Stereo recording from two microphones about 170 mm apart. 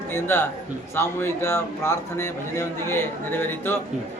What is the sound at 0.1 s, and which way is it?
A man's voice, 10° left (ahead or behind).